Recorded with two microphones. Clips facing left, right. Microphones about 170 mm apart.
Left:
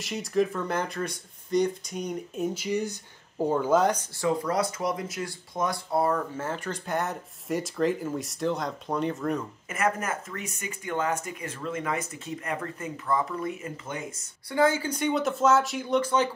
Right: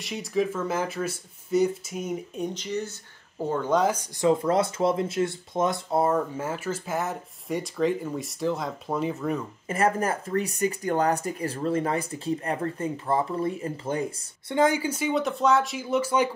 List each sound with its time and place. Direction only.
0.0 s speech: centre (ahead or behind)
4.2 s speech: 25° right (ahead or behind)
6.4 s speech: 5° right (ahead or behind)
9.7 s speech: 30° right (ahead or behind)
14.5 s speech: 20° right (ahead or behind)